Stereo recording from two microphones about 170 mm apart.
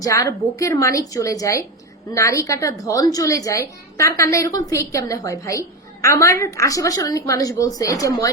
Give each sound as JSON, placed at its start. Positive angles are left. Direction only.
{"t": 0.0, "sound": "a woman's voice", "side_deg": 20}